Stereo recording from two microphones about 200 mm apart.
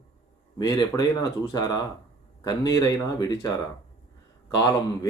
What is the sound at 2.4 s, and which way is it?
Speech, 20° left (ahead or behind).